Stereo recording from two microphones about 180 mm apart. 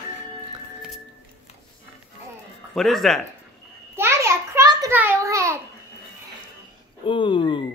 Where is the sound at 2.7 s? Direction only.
Centre (ahead or behind).